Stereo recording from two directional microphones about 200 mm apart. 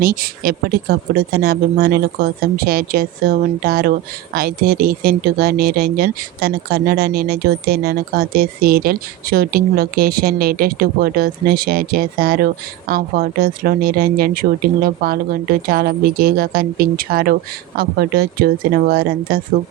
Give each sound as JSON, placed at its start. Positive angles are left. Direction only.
{"t": 0.0, "sound": "speech", "side_deg": -45}